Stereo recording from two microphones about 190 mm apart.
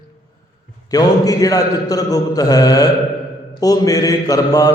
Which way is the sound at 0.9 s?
20° left (ahead or behind).